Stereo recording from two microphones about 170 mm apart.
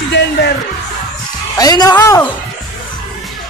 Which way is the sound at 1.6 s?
20° left (ahead or behind).